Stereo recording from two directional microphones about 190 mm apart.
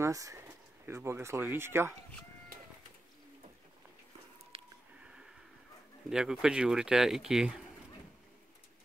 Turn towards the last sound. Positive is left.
turn(degrees=-5)  # may be behind; listen again after turning